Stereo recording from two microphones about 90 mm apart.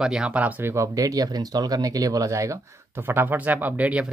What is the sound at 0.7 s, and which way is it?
Speech, 35° right (ahead or behind).